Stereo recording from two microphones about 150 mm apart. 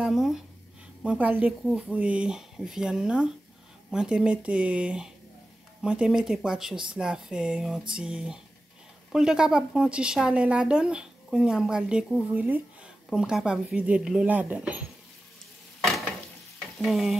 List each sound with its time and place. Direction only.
0.0 s a woman's voice: 5° right (ahead or behind)
15.8 s stir: centre (ahead or behind)